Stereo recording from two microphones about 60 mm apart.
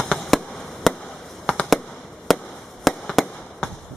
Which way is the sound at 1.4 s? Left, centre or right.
Centre.